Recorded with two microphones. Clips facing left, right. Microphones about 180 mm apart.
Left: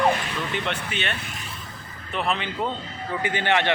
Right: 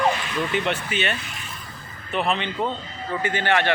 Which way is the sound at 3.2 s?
15° left (ahead or behind).